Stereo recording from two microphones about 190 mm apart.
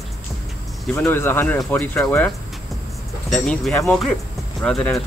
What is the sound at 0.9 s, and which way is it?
Speech, 10° left (ahead or behind).